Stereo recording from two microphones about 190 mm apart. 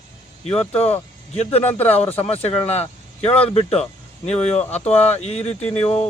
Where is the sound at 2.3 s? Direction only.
30° left (ahead or behind).